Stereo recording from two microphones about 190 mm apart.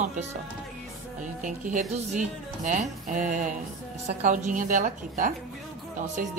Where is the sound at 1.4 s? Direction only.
40° right (ahead or behind).